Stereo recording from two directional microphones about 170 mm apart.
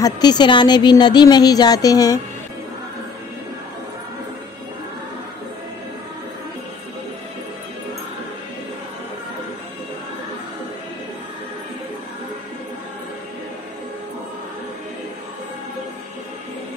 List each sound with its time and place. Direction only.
0.0 s speech: 25° left (ahead or behind)